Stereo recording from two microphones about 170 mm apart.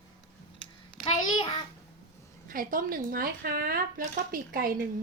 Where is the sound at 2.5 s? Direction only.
55° right (ahead or behind).